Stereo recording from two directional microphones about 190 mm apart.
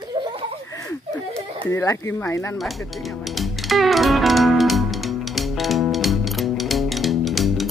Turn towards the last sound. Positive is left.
turn(degrees=0)  # may be behind; listen again after turning